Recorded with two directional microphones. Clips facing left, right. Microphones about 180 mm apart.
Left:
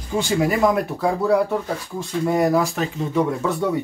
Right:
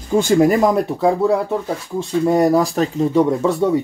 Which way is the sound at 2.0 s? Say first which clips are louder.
Right 5 dB; 35° right (ahead or behind).